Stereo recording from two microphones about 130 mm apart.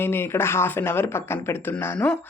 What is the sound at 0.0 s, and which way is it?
Speech, 20° left (ahead or behind).